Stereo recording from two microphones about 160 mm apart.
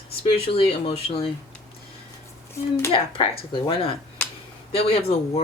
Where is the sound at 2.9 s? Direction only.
35° left (ahead or behind).